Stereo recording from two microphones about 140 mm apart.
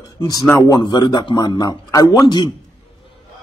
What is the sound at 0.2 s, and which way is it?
Speech, 25° left (ahead or behind).